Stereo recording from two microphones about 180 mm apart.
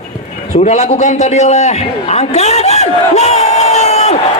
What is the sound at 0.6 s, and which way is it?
A man's voice, 40° left (ahead or behind).